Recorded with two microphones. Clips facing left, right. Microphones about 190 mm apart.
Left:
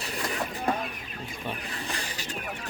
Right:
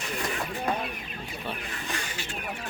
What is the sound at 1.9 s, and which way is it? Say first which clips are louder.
Snake: right 1 dB; 35° left (ahead or behind).